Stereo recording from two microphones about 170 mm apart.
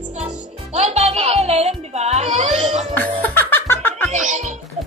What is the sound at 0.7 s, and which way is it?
Music, 40° right (ahead or behind).